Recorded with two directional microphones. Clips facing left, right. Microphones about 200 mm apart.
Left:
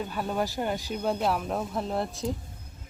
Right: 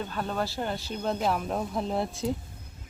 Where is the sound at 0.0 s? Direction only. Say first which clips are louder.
Left 1 dB; 10° left (ahead or behind).